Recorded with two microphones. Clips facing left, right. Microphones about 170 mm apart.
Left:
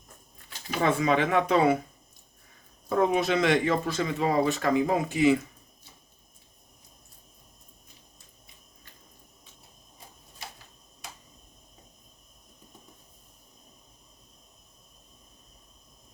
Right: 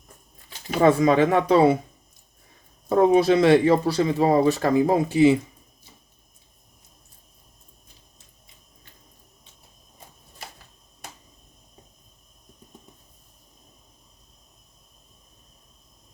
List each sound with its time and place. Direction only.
0.7 s speech: 40° right (ahead or behind)
2.9 s speech: 35° right (ahead or behind)